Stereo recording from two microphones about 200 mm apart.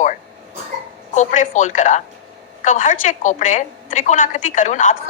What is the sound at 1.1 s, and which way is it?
A woman's voice, 35° left (ahead or behind).